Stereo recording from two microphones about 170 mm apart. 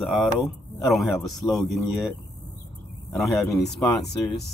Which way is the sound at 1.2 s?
20° left (ahead or behind).